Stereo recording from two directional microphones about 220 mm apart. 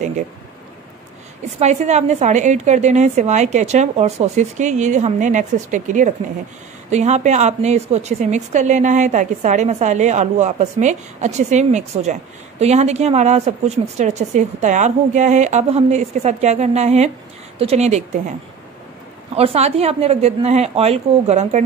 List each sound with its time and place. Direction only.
1.6 s a woman's voice: 30° right (ahead or behind)
19.3 s a woman's voice: 30° right (ahead or behind)